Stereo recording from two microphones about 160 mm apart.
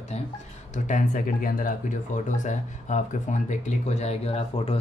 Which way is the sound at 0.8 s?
55° left (ahead or behind).